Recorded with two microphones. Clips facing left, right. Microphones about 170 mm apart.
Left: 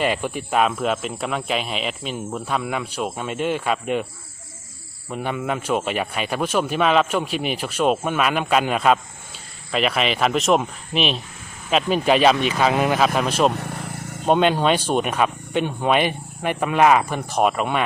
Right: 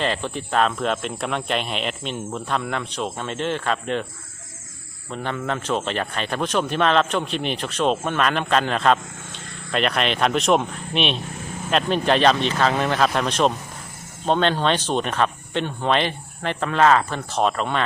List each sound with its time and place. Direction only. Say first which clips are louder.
0.0 s speech: left 2 dB; 10° left (ahead or behind)
5.1 s speech: left 2 dB; 10° left (ahead or behind)
13.5 s vehicle: left 6 dB; 70° left (ahead or behind)
14.3 s speech: left 2 dB; 10° left (ahead or behind)